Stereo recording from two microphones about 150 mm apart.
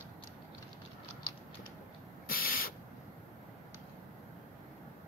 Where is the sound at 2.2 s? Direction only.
75° left (ahead or behind).